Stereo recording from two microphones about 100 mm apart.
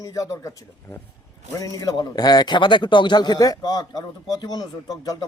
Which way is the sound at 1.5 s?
35° left (ahead or behind).